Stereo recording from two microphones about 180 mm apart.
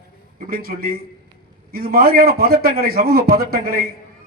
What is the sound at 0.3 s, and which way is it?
A man's voice, 55° right (ahead or behind).